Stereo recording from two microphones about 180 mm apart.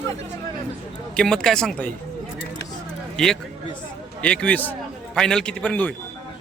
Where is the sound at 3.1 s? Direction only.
5° left (ahead or behind).